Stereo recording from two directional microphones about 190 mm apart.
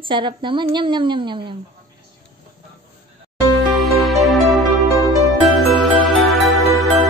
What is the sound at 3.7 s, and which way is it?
Music, centre (ahead or behind).